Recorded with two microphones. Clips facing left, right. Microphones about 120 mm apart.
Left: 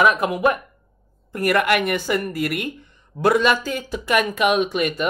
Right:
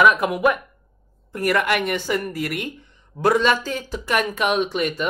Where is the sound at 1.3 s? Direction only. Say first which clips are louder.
Left 2 dB; 55° left (ahead or behind).